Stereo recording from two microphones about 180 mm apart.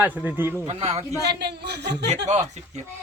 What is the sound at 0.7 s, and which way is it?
Speech, 35° right (ahead or behind).